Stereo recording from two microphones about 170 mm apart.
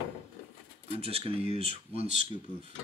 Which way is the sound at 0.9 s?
35° right (ahead or behind).